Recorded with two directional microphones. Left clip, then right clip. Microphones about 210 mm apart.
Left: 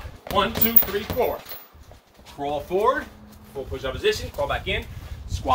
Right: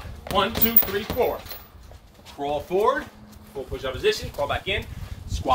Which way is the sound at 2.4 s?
10° left (ahead or behind).